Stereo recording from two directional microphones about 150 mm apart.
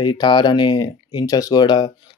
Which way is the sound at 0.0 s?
30° left (ahead or behind).